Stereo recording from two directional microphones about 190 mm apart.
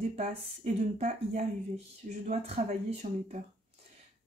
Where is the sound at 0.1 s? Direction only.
35° right (ahead or behind).